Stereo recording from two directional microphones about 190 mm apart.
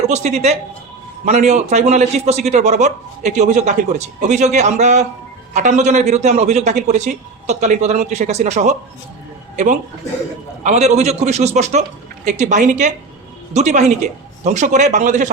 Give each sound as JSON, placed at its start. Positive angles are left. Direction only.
{"t": 0.1, "sound": "a man's voice", "side_deg": -35}
{"t": 10.6, "sound": "a man's voice", "side_deg": -35}